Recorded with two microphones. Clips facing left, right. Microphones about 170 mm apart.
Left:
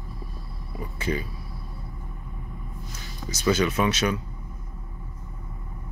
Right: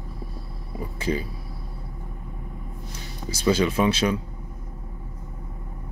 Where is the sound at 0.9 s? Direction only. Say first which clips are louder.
Right 2 dB; 30° right (ahead or behind).